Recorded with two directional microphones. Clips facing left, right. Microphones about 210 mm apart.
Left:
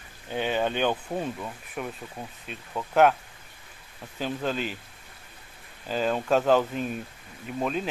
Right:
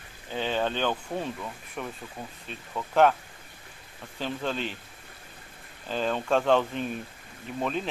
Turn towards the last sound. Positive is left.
turn(degrees=5)  # may be behind; listen again after turning